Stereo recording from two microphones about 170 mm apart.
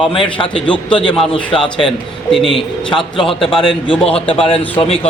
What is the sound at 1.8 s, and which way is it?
Speech, centre (ahead or behind).